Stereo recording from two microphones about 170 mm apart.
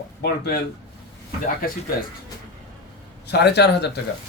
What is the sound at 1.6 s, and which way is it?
Speech, 60° left (ahead or behind).